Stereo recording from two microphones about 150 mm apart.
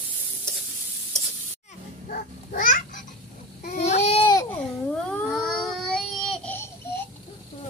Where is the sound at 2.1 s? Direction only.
65° left (ahead or behind).